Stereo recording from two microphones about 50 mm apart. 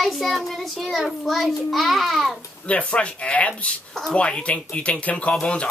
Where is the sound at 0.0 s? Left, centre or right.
Centre.